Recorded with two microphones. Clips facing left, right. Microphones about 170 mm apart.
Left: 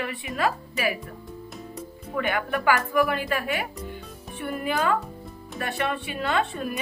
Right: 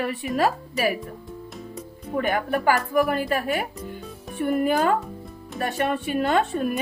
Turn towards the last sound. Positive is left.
turn(degrees=-45)  # may be behind; listen again after turning